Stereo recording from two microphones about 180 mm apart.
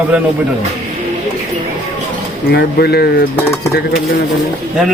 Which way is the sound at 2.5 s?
60° left (ahead or behind).